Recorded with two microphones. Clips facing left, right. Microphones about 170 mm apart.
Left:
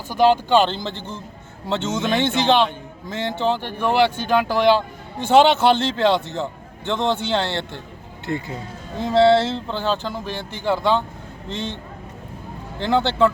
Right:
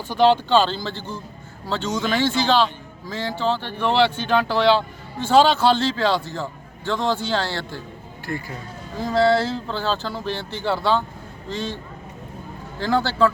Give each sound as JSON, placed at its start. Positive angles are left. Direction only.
{"t": 0.1, "sound": "a man's voice", "side_deg": 10}
{"t": 9.0, "sound": "a man's voice", "side_deg": 25}
{"t": 12.8, "sound": "a man's voice", "side_deg": 25}